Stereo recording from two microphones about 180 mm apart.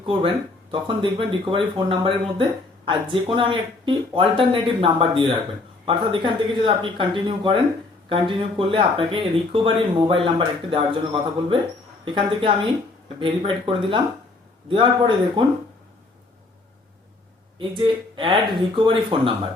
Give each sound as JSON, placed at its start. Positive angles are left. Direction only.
{"t": 0.0, "sound": "speech", "side_deg": -30}
{"t": 17.6, "sound": "speech", "side_deg": -25}